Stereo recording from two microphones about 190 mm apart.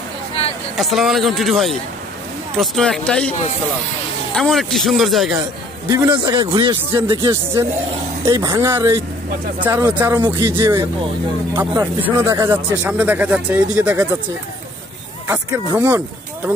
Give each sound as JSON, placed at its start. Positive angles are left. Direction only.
{"t": 0.7, "sound": "a man's voice", "side_deg": 0}
{"t": 4.4, "sound": "a man's voice", "side_deg": 0}
{"t": 5.9, "sound": "a man's voice", "side_deg": -25}
{"t": 10.2, "sound": "a man's voice", "side_deg": -25}
{"t": 10.5, "sound": "speech", "side_deg": -10}
{"t": 15.2, "sound": "speech", "side_deg": -15}